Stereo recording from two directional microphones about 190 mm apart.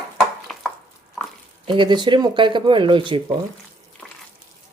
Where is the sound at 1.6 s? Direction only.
25° right (ahead or behind).